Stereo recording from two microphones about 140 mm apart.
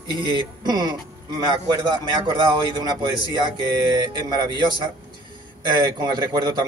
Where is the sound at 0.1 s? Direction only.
35° right (ahead or behind).